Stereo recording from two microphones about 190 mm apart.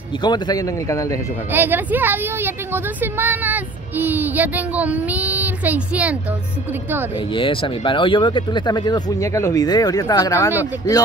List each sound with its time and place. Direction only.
0.2 s speech: 20° left (ahead or behind)
1.5 s a woman's voice: 10° right (ahead or behind)
7.3 s speech: 25° left (ahead or behind)